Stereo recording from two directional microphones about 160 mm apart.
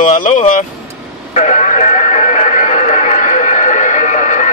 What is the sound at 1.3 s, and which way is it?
Radio, 50° left (ahead or behind).